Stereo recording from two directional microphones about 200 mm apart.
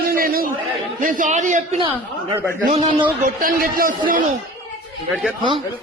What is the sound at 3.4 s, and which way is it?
Speech, 45° right (ahead or behind).